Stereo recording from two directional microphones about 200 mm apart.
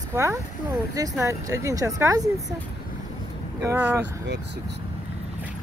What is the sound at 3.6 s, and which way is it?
Speech, 10° right (ahead or behind).